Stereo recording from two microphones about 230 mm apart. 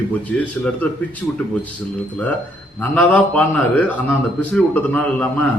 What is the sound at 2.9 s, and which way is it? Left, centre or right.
A man's voice, centre.